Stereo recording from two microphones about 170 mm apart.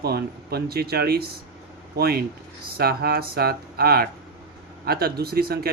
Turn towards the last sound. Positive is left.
turn(degrees=-65)  # may be behind; listen again after turning